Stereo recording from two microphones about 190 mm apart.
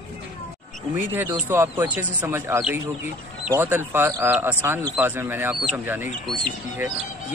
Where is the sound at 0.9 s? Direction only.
10° right (ahead or behind).